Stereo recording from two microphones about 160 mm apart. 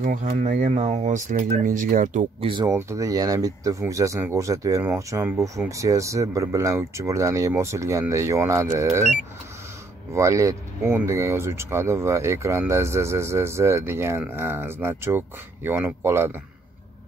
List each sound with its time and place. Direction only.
0.0 s speech: 60° right (ahead or behind)
2.4 s speech: 30° right (ahead or behind)
10.1 s speech: 20° right (ahead or behind)